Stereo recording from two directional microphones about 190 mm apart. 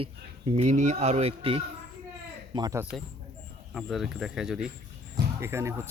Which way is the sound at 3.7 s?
Centre (ahead or behind).